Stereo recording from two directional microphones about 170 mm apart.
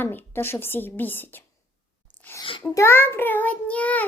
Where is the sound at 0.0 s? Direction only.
15° left (ahead or behind).